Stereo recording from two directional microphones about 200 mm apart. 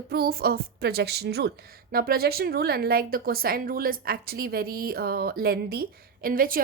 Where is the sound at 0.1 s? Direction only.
50° right (ahead or behind).